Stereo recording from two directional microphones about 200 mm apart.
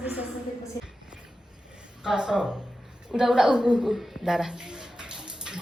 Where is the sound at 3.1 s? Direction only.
Centre (ahead or behind).